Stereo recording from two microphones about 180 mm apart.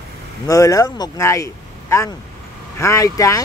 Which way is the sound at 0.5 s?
20° left (ahead or behind).